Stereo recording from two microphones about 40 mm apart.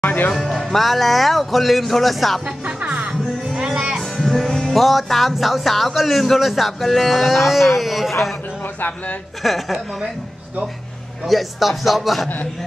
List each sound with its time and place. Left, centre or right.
0.0 s music: left
0.3 s speech: centre
2.4 s speech: right
3.1 s music: centre
4.0 s music: centre
4.7 s speech: centre
9.4 s speech: centre
11.2 s speech: centre